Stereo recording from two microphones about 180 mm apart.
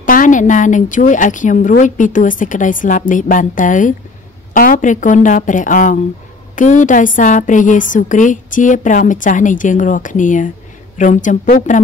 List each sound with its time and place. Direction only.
0.0 s a woman's voice: 50° left (ahead or behind)